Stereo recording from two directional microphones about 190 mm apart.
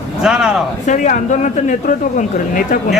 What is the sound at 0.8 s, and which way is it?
Speech, 40° left (ahead or behind).